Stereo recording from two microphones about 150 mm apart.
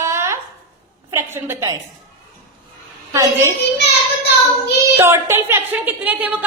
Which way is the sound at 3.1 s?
25° right (ahead or behind).